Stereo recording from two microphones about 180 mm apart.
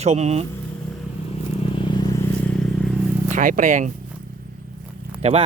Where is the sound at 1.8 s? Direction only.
25° left (ahead or behind).